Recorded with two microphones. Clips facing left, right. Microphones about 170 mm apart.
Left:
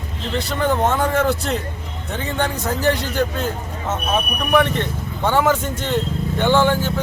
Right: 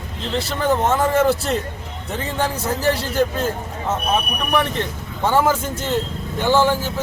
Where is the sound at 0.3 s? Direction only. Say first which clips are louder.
Even; 5° right (ahead or behind).